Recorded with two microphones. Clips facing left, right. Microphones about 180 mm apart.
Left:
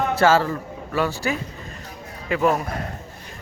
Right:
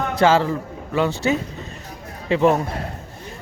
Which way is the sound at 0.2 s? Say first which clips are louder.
Right 2 dB; 15° right (ahead or behind).